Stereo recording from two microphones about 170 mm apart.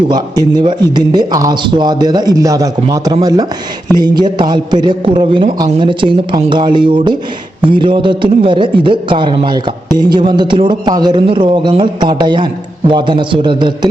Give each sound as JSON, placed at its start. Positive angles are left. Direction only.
{"t": 0.1, "sound": "a man's voice", "side_deg": -25}